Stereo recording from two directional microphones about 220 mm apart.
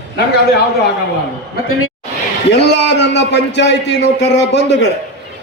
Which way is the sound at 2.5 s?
50° left (ahead or behind).